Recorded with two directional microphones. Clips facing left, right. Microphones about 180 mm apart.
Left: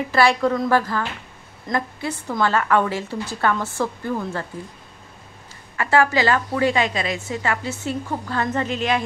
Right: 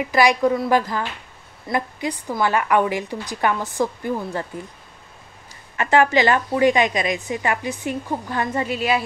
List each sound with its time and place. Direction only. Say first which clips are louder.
0.0 s a woman's voice: right 1 dB; 15° right (ahead or behind)
5.8 s a woman's voice: right 2 dB; 20° right (ahead or behind)